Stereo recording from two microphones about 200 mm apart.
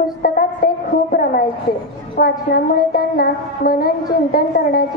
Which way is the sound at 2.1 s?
50° left (ahead or behind).